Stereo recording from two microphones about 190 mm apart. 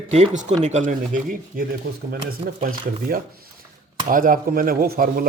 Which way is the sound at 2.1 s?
50° right (ahead or behind).